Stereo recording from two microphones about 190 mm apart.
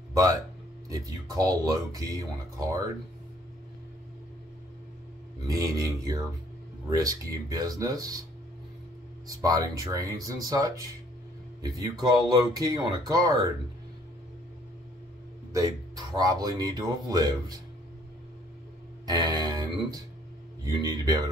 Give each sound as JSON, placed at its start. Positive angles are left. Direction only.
{"t": 0.1, "sound": "speech", "side_deg": -20}
{"t": 5.5, "sound": "speech", "side_deg": -20}
{"t": 9.4, "sound": "speech", "side_deg": -20}
{"t": 15.5, "sound": "speech", "side_deg": -20}
{"t": 19.0, "sound": "speech", "side_deg": -20}